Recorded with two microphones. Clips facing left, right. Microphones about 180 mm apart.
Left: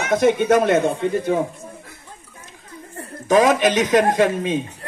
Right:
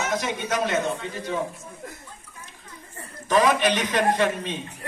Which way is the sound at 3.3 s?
45° left (ahead or behind).